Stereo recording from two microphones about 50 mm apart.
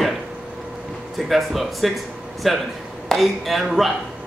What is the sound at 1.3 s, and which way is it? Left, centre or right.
Speech, centre.